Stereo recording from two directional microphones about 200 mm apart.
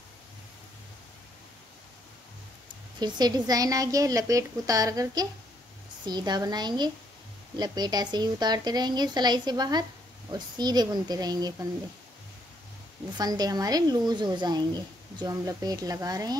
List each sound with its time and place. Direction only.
3.0 s a woman's voice: 20° right (ahead or behind)
13.2 s speech: 20° right (ahead or behind)